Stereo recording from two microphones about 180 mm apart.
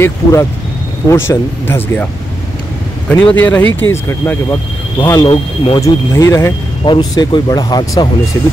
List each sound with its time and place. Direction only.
0.0 s speech: 15° left (ahead or behind)
3.1 s speech: 5° left (ahead or behind); by 8.1 s 20° left (ahead or behind)